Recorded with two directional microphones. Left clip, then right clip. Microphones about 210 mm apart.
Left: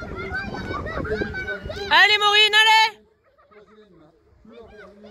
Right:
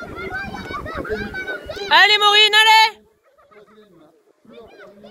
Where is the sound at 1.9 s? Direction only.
5° right (ahead or behind).